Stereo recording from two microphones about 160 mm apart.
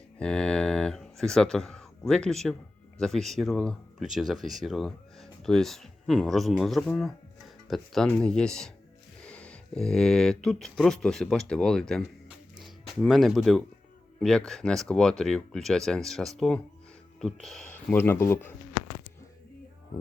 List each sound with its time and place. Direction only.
0.2 s speech: 5° left (ahead or behind)
12.5 s a sound: centre (ahead or behind)
14.2 s speech: 5° left (ahead or behind)